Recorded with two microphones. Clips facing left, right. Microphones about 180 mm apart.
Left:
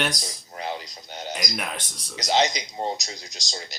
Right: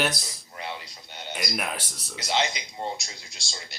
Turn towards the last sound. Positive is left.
turn(degrees=40)  # may be behind; listen again after turning